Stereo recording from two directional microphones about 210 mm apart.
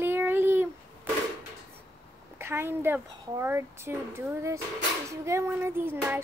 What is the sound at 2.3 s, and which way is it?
Speech, 10° right (ahead or behind).